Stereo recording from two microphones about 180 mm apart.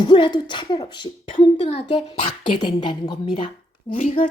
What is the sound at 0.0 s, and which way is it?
A woman's voice, 25° left (ahead or behind).